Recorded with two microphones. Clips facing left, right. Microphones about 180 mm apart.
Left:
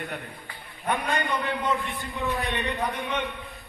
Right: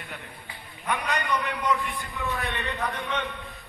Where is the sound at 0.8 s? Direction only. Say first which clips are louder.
Left 1 dB; 30° left (ahead or behind).